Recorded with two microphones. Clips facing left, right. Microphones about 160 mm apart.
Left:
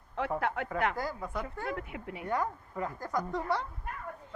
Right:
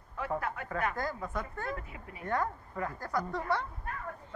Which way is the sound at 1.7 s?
75° left (ahead or behind).